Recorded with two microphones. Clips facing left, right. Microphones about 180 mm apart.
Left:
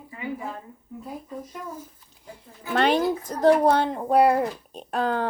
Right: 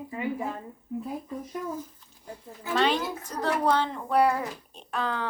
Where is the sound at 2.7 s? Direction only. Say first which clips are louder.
Left 4 dB; 55° left (ahead or behind).